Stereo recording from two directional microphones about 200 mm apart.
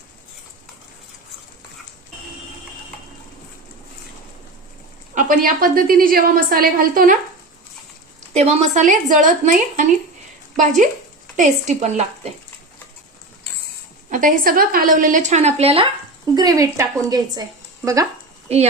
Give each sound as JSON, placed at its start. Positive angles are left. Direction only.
{"t": 5.1, "sound": "a woman's voice", "side_deg": -45}
{"t": 8.3, "sound": "a woman's voice", "side_deg": -35}
{"t": 14.1, "sound": "a woman's voice", "side_deg": -45}
{"t": 18.4, "sound": "speech", "side_deg": -30}